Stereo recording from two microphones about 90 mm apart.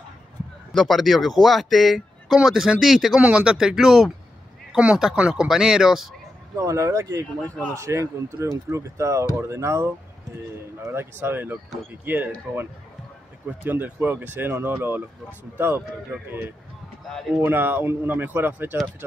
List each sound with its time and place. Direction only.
0.7 s speech: centre (ahead or behind)
3.2 s speech: 10° right (ahead or behind)
6.5 s speech: 35° right (ahead or behind)
7.4 s a man's voice: 15° left (ahead or behind)
7.7 s speech: 35° right (ahead or behind)
17.1 s speech: 5° left (ahead or behind)
17.4 s speech: 20° right (ahead or behind)